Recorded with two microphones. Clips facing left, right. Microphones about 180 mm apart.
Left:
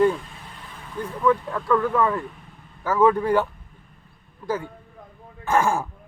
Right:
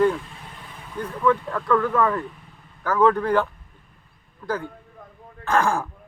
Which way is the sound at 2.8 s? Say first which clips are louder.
Even; 10° left (ahead or behind).